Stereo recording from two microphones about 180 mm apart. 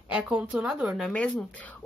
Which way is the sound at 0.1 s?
5° right (ahead or behind).